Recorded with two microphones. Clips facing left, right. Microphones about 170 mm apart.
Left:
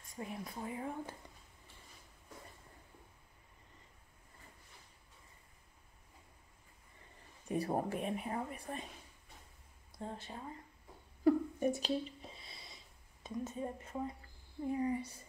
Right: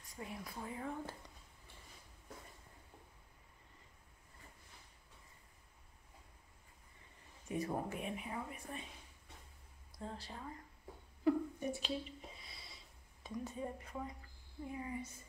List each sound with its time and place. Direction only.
0.0 s a woman's voice: 25° left (ahead or behind)
7.4 s speech: 35° left (ahead or behind)
9.9 s a woman's voice: 20° left (ahead or behind)
11.2 s a sound: 40° left (ahead or behind)
12.4 s a sound: 20° left (ahead or behind)
14.7 s speech: 35° left (ahead or behind)